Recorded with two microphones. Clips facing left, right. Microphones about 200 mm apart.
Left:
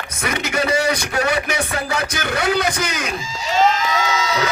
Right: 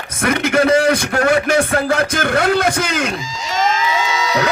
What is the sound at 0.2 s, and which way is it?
A man's voice, 55° right (ahead or behind).